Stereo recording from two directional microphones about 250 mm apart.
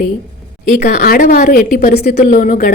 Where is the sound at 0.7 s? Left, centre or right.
Left.